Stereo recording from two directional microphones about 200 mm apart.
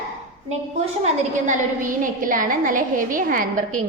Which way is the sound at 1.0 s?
40° right (ahead or behind).